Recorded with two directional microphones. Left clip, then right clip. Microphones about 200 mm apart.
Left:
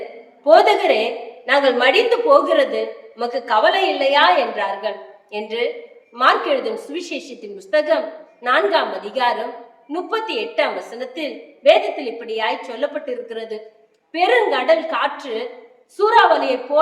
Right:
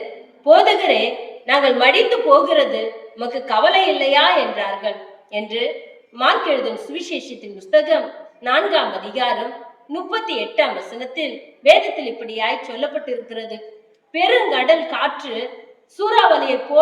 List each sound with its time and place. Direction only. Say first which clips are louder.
0.4 s a woman's voice: even; 20° left (ahead or behind)